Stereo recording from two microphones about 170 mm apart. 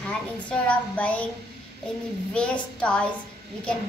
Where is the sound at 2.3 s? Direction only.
5° left (ahead or behind).